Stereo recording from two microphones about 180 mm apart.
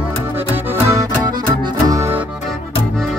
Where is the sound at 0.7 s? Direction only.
15° right (ahead or behind).